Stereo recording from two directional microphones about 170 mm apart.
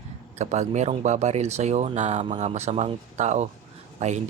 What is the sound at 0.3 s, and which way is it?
Speech, 40° right (ahead or behind).